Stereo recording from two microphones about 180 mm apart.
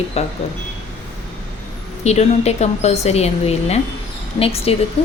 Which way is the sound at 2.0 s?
35° left (ahead or behind).